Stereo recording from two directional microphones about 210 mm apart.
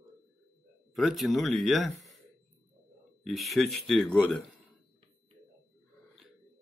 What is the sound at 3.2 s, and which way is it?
Speech, centre (ahead or behind).